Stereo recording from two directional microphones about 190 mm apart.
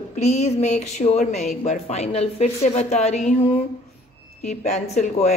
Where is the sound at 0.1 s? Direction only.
35° left (ahead or behind).